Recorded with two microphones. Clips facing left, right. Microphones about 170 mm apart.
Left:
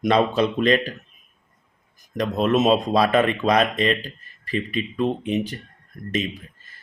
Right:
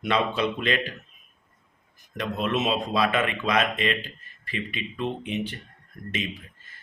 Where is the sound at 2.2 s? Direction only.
40° left (ahead or behind).